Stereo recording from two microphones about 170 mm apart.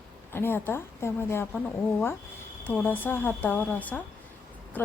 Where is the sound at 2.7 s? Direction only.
10° left (ahead or behind).